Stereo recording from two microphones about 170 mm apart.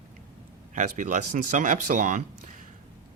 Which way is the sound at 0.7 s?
45° right (ahead or behind).